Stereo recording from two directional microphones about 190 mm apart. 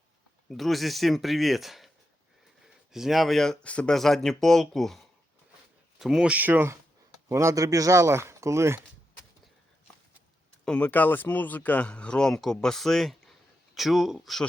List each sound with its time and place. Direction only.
0.4 s speech: centre (ahead or behind)
2.9 s speech: centre (ahead or behind)
10.7 s speech: 5° left (ahead or behind)